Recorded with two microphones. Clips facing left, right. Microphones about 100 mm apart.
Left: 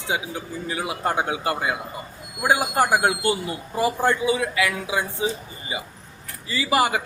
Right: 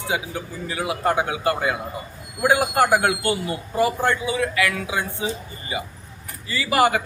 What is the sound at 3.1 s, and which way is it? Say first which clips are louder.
A man's voice: right 1 dB; 25° left (ahead or behind).